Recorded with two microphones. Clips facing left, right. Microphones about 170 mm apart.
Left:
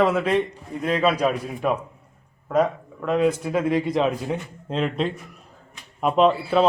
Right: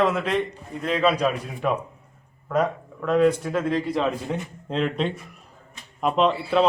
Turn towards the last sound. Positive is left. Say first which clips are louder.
# left 2 dB
turn(degrees=0)  # may be behind; listen again after turning